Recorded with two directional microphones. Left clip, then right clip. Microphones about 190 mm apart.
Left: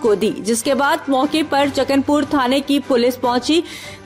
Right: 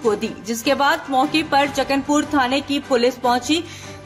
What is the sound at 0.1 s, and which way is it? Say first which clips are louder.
A woman's voice: left 7 dB; 35° left (ahead or behind).